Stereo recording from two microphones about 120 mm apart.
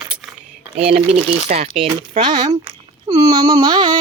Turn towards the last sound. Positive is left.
turn(degrees=-40)  # may be behind; listen again after turning